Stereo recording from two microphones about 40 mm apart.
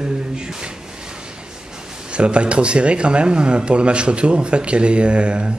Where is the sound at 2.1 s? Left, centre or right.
Right.